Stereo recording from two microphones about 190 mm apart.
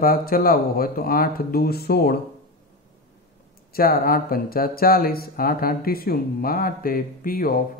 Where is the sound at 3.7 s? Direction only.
50° left (ahead or behind).